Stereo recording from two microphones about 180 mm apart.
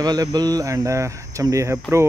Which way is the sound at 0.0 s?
20° right (ahead or behind).